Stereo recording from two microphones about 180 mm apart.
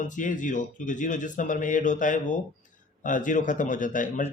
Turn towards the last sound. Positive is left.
turn(degrees=45)  # may be behind; listen again after turning